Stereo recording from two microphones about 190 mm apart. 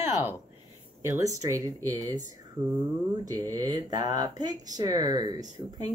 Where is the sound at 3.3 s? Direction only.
20° right (ahead or behind).